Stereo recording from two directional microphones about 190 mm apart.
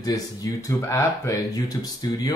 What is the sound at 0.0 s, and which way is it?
Speech, 20° left (ahead or behind).